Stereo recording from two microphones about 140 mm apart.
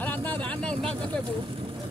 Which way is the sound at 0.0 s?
10° left (ahead or behind).